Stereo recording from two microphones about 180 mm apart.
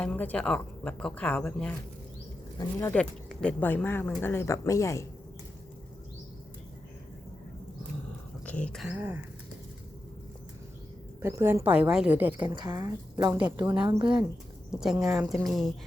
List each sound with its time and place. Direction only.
0.0 s speech: 10° left (ahead or behind)
2.6 s speech: 20° left (ahead or behind)
2.9 s speech: 5° left (ahead or behind)
8.4 s speech: 5° left (ahead or behind); by 9.2 s 10° right (ahead or behind)
11.2 s a woman's voice: 15° right (ahead or behind)
12.4 s a woman's voice: 25° right (ahead or behind)
14.7 s speech: 5° right (ahead or behind)